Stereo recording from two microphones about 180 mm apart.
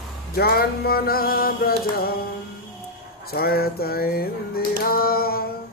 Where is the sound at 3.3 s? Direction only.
55° left (ahead or behind).